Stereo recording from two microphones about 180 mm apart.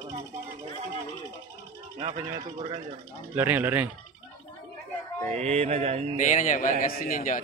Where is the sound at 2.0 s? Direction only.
30° right (ahead or behind).